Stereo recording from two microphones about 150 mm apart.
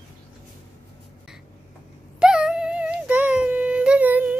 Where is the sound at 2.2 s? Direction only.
5° right (ahead or behind).